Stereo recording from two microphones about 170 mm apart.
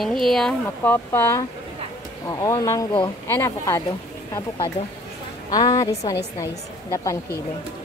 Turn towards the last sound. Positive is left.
turn(degrees=20)  # may be behind; listen again after turning